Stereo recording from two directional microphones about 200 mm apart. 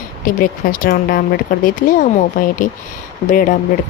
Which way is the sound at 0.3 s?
45° left (ahead or behind).